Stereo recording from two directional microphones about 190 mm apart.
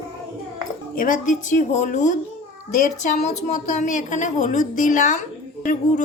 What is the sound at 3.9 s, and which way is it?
A woman's voice, 40° left (ahead or behind).